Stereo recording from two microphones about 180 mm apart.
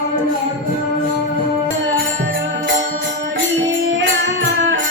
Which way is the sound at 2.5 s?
85° right.